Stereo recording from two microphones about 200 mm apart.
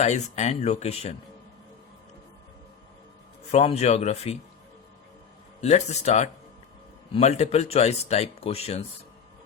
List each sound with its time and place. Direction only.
0.0 s speech: 35° left (ahead or behind)
3.5 s speech: 30° left (ahead or behind)
5.5 s speech: 35° left (ahead or behind)